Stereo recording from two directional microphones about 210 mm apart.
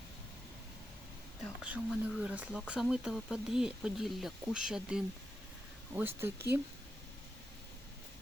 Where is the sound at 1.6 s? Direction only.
5° right (ahead or behind).